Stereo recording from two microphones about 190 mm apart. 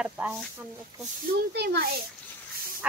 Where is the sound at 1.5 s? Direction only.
60° right (ahead or behind).